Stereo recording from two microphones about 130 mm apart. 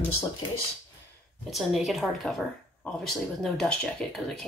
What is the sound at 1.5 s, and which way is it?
Speech, centre (ahead or behind).